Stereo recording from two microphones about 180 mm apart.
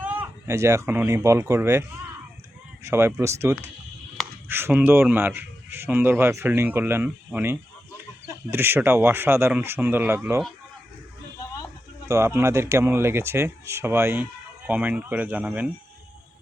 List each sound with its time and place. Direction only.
0.0 s speech: 10° right (ahead or behind)
2.8 s speech: 15° right (ahead or behind)
12.0 s speech: 15° right (ahead or behind)